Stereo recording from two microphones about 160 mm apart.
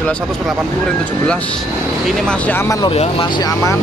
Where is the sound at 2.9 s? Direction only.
35° left (ahead or behind).